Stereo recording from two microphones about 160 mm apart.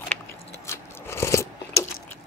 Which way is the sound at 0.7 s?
15° left (ahead or behind).